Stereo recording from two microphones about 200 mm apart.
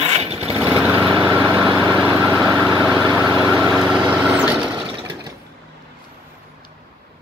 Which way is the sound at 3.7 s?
5° right (ahead or behind).